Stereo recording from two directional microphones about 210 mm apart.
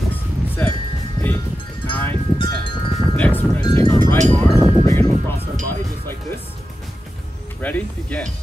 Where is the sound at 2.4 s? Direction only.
25° left (ahead or behind).